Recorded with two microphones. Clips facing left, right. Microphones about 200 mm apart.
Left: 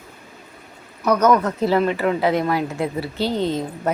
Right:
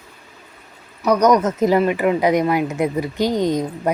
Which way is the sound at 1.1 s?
15° right (ahead or behind).